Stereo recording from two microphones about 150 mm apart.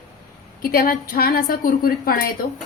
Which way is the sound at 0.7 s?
75° left (ahead or behind).